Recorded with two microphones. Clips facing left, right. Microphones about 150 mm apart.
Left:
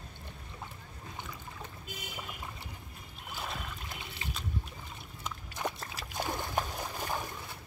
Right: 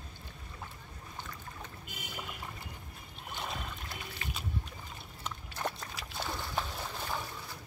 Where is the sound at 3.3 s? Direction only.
Centre (ahead or behind).